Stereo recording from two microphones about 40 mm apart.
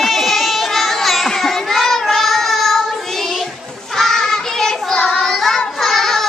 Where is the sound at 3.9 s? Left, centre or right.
Centre.